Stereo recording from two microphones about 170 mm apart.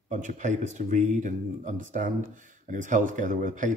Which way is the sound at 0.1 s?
45° right (ahead or behind).